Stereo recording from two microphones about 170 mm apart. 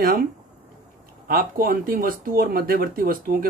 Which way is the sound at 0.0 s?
60° right (ahead or behind).